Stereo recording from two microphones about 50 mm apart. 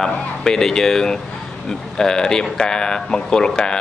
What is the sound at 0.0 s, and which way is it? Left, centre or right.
A man's voice, centre.